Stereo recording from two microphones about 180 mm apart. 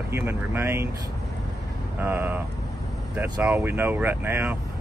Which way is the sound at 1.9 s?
10° right (ahead or behind).